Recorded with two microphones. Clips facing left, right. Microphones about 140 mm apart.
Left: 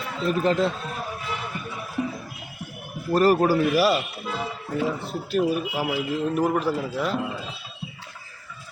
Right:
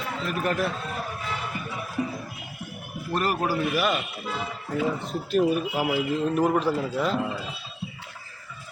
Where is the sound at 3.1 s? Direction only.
35° left (ahead or behind).